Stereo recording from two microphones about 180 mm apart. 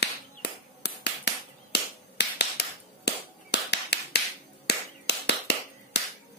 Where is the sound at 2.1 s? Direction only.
70° left (ahead or behind).